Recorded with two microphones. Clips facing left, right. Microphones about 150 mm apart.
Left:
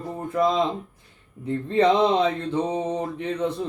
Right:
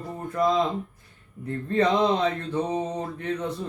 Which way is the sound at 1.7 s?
20° left (ahead or behind).